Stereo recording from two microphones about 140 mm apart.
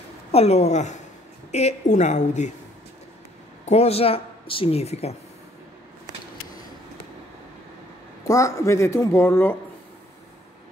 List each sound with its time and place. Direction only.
0.3 s a woman's voice: 50° left (ahead or behind)
3.6 s a woman's voice: 50° left (ahead or behind)
8.2 s speech: 20° left (ahead or behind)